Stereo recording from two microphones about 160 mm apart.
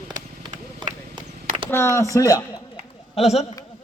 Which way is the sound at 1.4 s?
35° right (ahead or behind).